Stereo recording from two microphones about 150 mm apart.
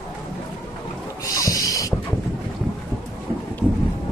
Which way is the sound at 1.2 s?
25° left (ahead or behind).